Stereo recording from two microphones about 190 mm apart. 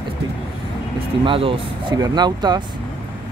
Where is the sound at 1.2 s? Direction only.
25° right (ahead or behind).